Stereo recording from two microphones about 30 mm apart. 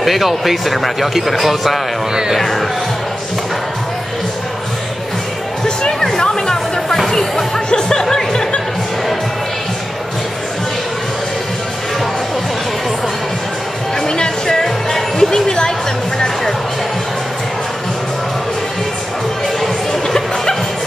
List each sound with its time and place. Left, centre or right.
0.0 s speech: centre
5.9 s chatter: centre
7.1 s a sound: centre
7.7 s music: left
14.0 s music: left
14.9 s music: centre
15.4 s a woman's voice: left
19.6 s a sound: centre